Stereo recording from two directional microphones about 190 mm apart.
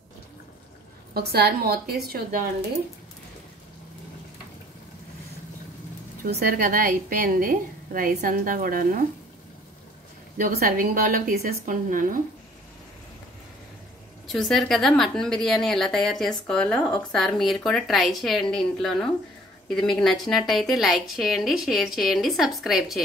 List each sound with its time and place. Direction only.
1.1 s a woman's voice: 55° right (ahead or behind)
6.4 s a woman's voice: 50° right (ahead or behind)
10.3 s a woman's voice: 45° right (ahead or behind)
14.2 s a woman's voice: centre (ahead or behind)